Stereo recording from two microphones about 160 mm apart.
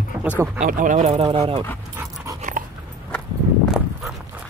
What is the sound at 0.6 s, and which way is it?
Speech, 55° right (ahead or behind).